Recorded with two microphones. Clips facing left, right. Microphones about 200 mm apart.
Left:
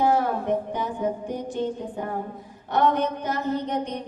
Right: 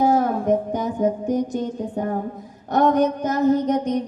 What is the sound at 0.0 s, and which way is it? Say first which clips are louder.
Music: right 4 dB; 45° right (ahead or behind).